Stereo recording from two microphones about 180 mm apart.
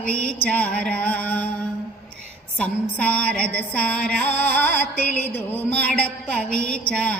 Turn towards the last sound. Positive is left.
turn(degrees=5)  # may be behind; listen again after turning